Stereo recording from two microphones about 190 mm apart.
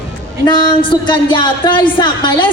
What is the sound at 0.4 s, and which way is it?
A woman's voice, 25° left (ahead or behind).